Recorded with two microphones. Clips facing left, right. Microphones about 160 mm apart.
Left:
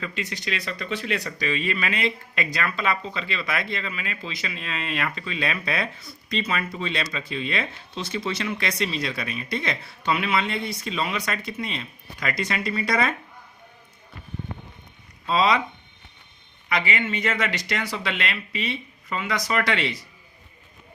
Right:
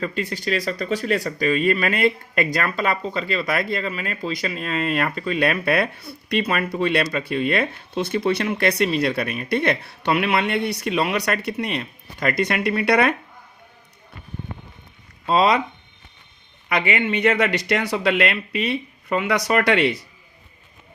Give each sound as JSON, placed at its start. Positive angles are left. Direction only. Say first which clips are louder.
{"t": 0.0, "sound": "speech", "louder": "right 6 dB", "side_deg": -45}
{"t": 15.3, "sound": "speech", "louder": "right 3 dB", "side_deg": -50}
{"t": 16.6, "sound": "speech", "louder": "right 4 dB", "side_deg": -50}